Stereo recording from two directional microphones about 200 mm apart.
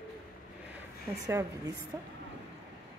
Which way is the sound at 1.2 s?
15° right (ahead or behind).